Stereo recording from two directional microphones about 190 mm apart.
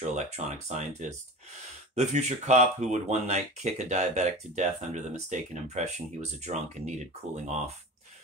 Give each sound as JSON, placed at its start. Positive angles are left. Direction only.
{"t": 0.0, "sound": "speech", "side_deg": -40}